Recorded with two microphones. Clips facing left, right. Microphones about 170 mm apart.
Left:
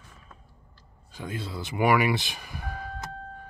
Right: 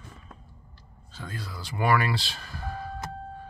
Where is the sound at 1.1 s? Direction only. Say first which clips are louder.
Left 4 dB; 20° left (ahead or behind).